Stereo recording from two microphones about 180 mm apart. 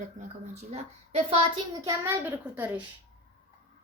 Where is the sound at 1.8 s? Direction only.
15° right (ahead or behind).